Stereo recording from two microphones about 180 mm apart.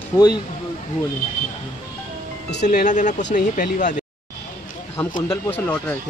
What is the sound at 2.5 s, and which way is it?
Speech, 70° left (ahead or behind).